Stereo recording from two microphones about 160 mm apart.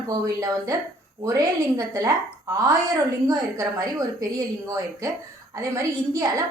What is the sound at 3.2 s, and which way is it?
A woman's voice, 20° right (ahead or behind).